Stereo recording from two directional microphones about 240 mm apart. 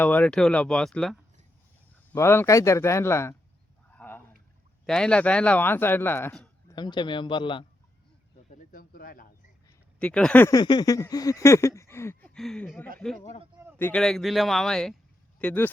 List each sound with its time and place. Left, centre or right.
0.0 s speech: centre
3.8 s a sound: centre
4.9 s speech: centre
6.7 s a man's voice: centre
8.4 s speech: left
10.0 s speech: centre